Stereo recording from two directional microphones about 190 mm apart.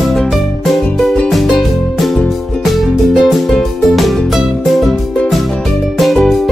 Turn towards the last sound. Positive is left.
turn(degrees=0)  # may be behind; listen again after turning